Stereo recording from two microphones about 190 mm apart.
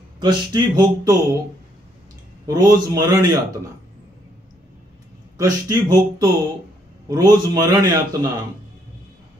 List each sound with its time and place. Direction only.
0.2 s a man's voice: 25° right (ahead or behind)
2.4 s a man's voice: 20° right (ahead or behind)
5.4 s a man's voice: 20° right (ahead or behind)